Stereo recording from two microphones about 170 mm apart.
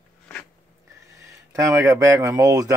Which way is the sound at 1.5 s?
20° right (ahead or behind).